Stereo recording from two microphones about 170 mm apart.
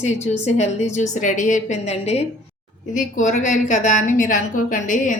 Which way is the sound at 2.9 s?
50° left (ahead or behind).